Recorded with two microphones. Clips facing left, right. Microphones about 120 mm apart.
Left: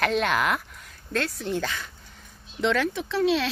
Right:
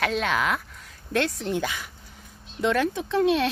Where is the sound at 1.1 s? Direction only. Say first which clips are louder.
Right 3 dB; 25° right (ahead or behind).